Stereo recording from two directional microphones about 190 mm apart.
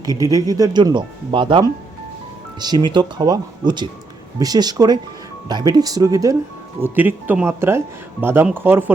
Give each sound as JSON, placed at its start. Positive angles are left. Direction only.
{"t": 0.0, "sound": "speech", "side_deg": -20}